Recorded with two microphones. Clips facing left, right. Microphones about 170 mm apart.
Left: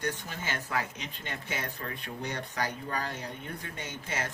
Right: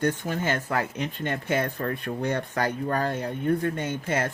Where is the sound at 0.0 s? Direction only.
55° right (ahead or behind).